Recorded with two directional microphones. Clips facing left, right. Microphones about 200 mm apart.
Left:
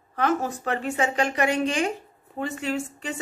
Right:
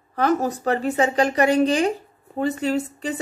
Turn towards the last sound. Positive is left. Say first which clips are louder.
# right 5 dB
turn(degrees=-40)  # may be behind; listen again after turning